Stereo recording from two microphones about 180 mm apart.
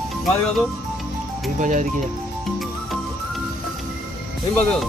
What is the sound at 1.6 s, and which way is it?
Speech, 45° right (ahead or behind).